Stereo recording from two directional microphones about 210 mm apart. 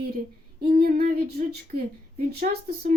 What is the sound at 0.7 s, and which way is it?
Speech, 45° right (ahead or behind).